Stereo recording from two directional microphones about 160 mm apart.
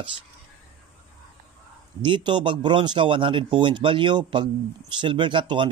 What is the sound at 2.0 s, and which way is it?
Speech, 30° right (ahead or behind).